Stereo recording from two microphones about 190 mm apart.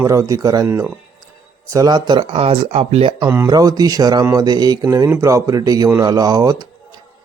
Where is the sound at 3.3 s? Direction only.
15° right (ahead or behind).